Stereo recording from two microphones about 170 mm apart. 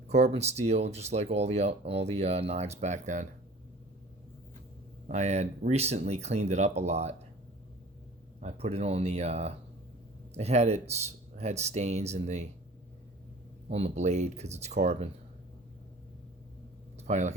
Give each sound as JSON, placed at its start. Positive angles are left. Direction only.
{"t": 0.1, "sound": "speech", "side_deg": -40}
{"t": 5.0, "sound": "speech", "side_deg": -40}
{"t": 8.4, "sound": "speech", "side_deg": -40}
{"t": 13.7, "sound": "speech", "side_deg": -40}
{"t": 17.0, "sound": "speech", "side_deg": -45}